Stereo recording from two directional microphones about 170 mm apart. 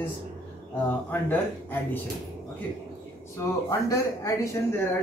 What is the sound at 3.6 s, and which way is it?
Speech, 20° left (ahead or behind).